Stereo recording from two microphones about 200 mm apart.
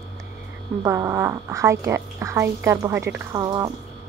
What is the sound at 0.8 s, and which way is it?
Speech, 15° right (ahead or behind).